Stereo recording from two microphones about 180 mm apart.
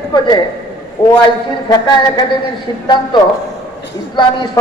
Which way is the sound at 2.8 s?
25° left (ahead or behind).